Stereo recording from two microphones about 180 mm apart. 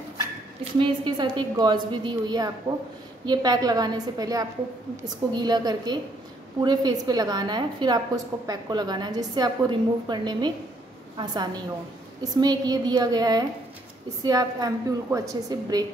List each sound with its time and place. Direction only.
0.7 s a woman's voice: 25° right (ahead or behind)